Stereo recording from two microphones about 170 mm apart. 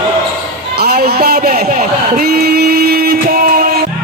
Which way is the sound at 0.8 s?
65° right (ahead or behind).